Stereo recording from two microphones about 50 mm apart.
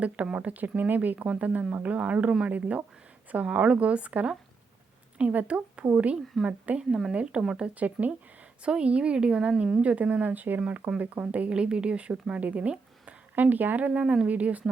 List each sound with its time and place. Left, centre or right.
0.3 s speech: right
7.7 s speech: right
14.0 s speech: centre
14.3 s speech: right